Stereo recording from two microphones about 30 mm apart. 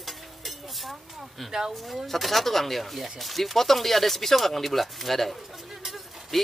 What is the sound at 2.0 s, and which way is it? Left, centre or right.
Speech, centre.